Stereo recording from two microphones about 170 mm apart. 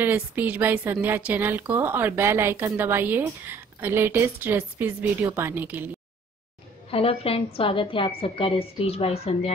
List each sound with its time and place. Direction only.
0.0 s speech: 10° right (ahead or behind)
6.9 s a woman's voice: 35° left (ahead or behind)